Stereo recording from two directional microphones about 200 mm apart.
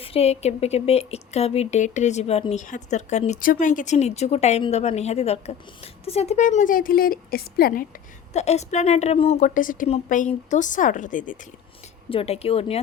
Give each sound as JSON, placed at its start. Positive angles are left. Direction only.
{"t": 0.0, "sound": "speech", "side_deg": 30}
{"t": 8.3, "sound": "speech", "side_deg": 35}
{"t": 12.0, "sound": "speech", "side_deg": 30}